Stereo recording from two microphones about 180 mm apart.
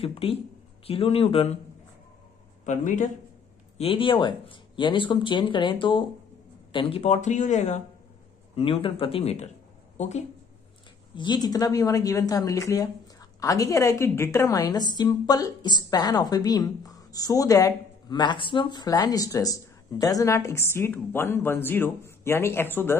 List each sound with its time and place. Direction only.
0.0 s speech: 30° left (ahead or behind)
2.6 s speech: 45° left (ahead or behind)
3.7 s a woman's voice: 30° left (ahead or behind)
11.1 s a woman's voice: 25° left (ahead or behind)